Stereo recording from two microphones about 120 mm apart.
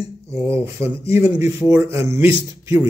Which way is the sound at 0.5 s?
20° right (ahead or behind).